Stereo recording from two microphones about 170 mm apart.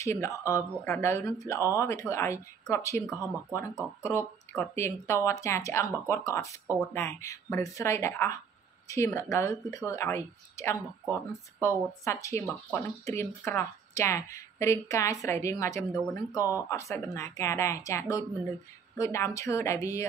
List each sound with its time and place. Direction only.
0.0 s a woman's voice: 15° left (ahead or behind)